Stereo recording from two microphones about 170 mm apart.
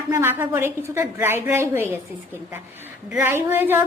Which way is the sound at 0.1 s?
15° right (ahead or behind).